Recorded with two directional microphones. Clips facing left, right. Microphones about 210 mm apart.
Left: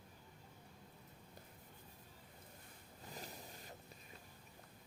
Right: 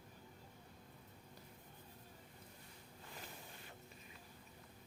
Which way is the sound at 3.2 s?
40° left (ahead or behind).